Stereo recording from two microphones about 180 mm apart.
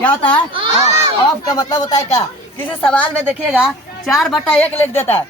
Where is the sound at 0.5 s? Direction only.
30° right (ahead or behind).